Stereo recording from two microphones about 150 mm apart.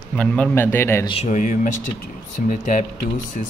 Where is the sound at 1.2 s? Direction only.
55° left (ahead or behind).